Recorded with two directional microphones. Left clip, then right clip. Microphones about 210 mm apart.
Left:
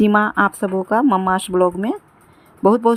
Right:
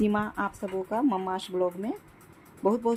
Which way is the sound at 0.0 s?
35° left (ahead or behind).